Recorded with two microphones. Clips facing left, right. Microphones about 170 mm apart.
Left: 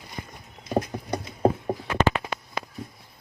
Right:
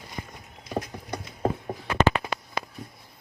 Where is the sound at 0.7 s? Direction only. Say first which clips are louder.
Left 5 dB; 30° left (ahead or behind).